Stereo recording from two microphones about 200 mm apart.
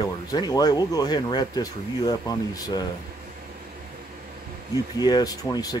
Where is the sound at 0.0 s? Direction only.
20° left (ahead or behind).